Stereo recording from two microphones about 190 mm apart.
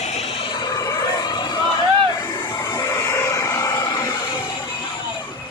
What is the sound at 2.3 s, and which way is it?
Music, 20° left (ahead or behind).